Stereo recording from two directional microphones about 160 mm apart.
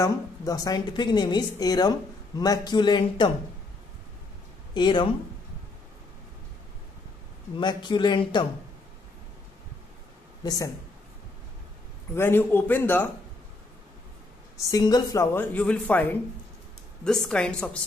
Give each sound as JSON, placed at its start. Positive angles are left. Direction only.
{"t": 0.0, "sound": "a woman's voice", "side_deg": 25}
{"t": 4.7, "sound": "a woman's voice", "side_deg": 30}
{"t": 7.5, "sound": "a woman's voice", "side_deg": 30}
{"t": 10.4, "sound": "a woman's voice", "side_deg": 25}
{"t": 12.2, "sound": "speech", "side_deg": 15}
{"t": 14.6, "sound": "speech", "side_deg": 25}